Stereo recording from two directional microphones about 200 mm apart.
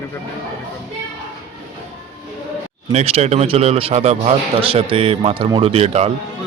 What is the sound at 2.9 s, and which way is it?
A man's voice, 30° right (ahead or behind).